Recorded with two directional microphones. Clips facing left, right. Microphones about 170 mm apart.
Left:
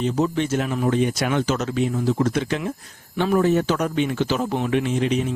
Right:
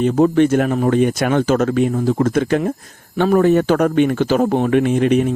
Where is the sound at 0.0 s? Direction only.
55° right (ahead or behind).